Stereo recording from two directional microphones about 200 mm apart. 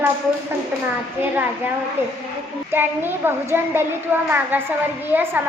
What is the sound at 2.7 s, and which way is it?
A child's voice, 10° right (ahead or behind).